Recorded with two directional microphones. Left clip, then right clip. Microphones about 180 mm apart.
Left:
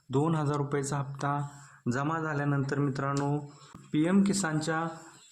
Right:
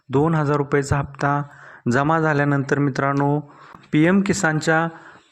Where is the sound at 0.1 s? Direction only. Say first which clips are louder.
Right 10 dB; 30° right (ahead or behind).